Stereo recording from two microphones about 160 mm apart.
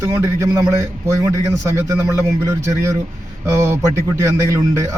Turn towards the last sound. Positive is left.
turn(degrees=-20)  # may be behind; listen again after turning